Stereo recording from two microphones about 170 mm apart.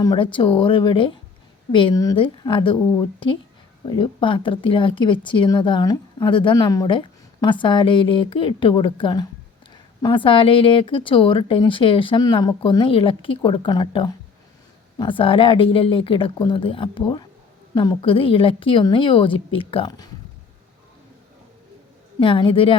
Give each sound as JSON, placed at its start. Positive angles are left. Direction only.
{"t": 0.0, "sound": "speech", "side_deg": 25}
{"t": 22.2, "sound": "speech", "side_deg": 30}